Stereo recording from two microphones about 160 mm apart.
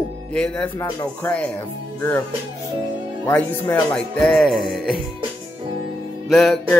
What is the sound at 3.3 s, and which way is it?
Music, 10° left (ahead or behind).